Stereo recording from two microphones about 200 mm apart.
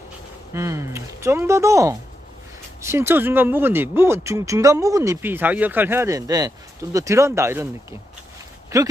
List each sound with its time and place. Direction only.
0.5 s speech: 15° right (ahead or behind)
8.7 s speech: 15° right (ahead or behind)